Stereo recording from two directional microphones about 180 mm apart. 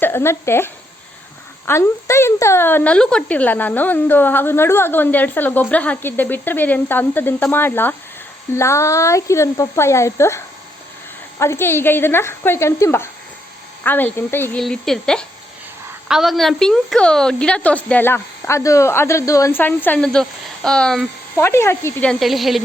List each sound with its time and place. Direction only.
0.0 s a woman's voice: 15° left (ahead or behind)
21.3 s a woman's voice: 15° left (ahead or behind); by 22.6 s centre (ahead or behind)